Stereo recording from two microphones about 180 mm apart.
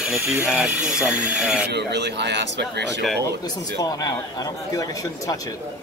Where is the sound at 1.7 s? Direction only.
70° right (ahead or behind).